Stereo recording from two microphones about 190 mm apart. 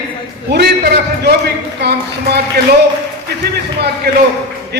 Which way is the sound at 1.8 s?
60° right (ahead or behind).